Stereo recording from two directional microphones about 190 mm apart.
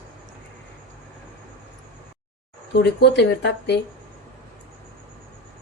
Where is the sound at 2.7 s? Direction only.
60° left (ahead or behind).